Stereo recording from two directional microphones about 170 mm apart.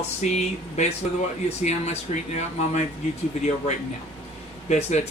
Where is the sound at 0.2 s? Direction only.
40° left (ahead or behind).